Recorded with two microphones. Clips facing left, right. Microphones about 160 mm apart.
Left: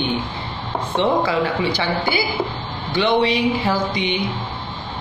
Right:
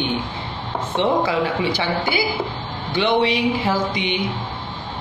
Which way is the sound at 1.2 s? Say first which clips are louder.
Left 1 dB; 15° right (ahead or behind).